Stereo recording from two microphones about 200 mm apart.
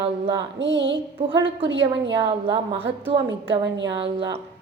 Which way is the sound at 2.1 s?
25° right (ahead or behind).